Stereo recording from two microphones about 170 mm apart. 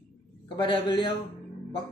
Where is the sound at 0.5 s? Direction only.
25° left (ahead or behind).